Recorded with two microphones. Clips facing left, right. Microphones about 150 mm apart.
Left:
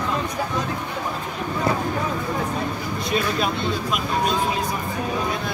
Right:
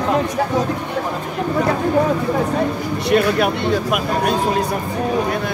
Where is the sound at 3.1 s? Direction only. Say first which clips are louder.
Right 8 dB; 65° right (ahead or behind).